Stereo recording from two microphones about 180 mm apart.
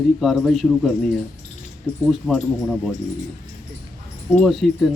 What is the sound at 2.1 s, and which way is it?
Speech, 5° left (ahead or behind).